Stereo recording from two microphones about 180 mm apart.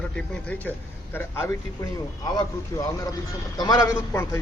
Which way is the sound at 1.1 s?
15° left (ahead or behind).